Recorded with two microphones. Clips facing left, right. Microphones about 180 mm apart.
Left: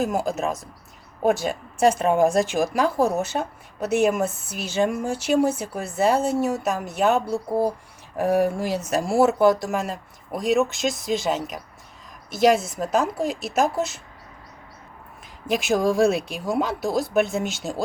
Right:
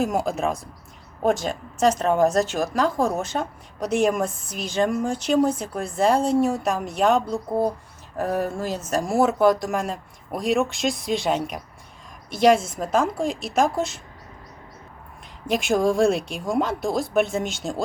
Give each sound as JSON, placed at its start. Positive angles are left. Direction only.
{"t": 0.0, "sound": "speech", "side_deg": 0}
{"t": 12.5, "sound": "a woman's voice", "side_deg": -50}
{"t": 12.8, "sound": "speech", "side_deg": 5}
{"t": 15.4, "sound": "speech", "side_deg": 0}